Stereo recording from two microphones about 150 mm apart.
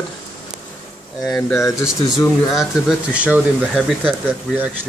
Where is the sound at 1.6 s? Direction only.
20° left (ahead or behind).